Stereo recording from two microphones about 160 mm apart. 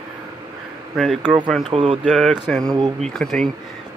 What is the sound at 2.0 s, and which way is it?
Speech, centre (ahead or behind).